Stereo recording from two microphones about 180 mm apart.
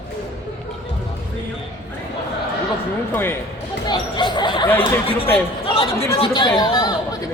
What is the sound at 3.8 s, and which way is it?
Speech, 25° left (ahead or behind).